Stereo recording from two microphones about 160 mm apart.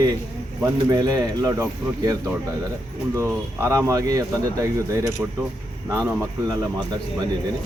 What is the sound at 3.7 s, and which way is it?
Speech, 20° right (ahead or behind).